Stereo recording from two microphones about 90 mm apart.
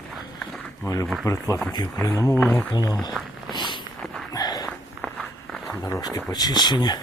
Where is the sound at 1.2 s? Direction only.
35° left (ahead or behind).